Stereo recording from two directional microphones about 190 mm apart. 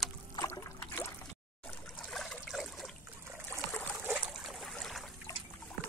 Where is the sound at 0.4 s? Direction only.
20° left (ahead or behind).